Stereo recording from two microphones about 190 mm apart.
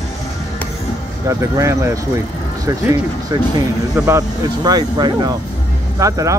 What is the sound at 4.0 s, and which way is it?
Speech, 15° right (ahead or behind).